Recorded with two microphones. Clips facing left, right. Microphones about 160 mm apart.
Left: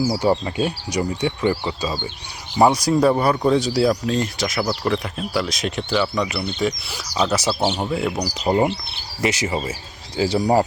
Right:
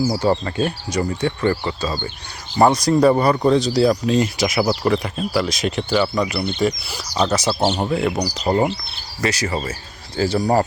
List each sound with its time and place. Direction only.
0.0 s speech: 15° left (ahead or behind)
8.5 s speech: 10° left (ahead or behind)